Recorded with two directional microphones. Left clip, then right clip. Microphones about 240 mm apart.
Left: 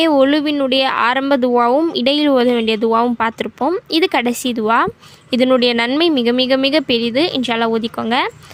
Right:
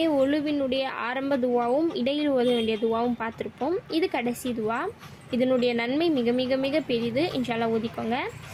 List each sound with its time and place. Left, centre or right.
0.0 s speech: left